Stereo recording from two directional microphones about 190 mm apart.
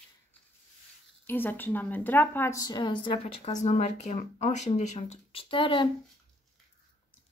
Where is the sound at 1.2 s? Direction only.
10° left (ahead or behind); by 5.9 s 25° left (ahead or behind).